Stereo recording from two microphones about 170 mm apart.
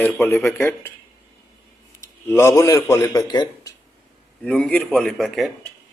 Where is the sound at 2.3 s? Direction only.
15° left (ahead or behind).